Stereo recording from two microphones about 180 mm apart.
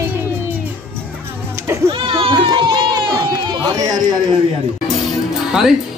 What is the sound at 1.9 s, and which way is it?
Run, 30° right (ahead or behind).